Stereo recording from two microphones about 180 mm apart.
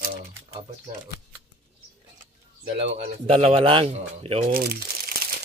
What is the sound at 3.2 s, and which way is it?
Speech, 35° right (ahead or behind).